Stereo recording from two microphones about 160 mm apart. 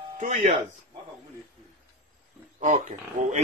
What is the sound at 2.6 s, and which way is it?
Speech, 45° right (ahead or behind).